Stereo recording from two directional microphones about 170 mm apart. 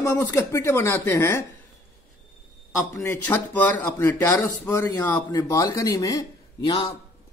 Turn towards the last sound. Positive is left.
turn(degrees=30)  # may be behind; listen again after turning